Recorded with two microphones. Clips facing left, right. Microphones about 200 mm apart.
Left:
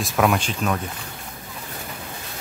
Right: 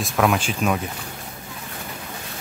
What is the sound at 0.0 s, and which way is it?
Speech, centre (ahead or behind).